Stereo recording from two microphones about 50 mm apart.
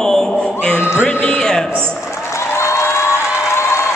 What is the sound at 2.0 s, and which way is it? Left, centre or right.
Music, left.